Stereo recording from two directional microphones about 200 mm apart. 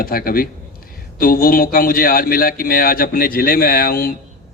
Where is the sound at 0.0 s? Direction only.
45° left (ahead or behind).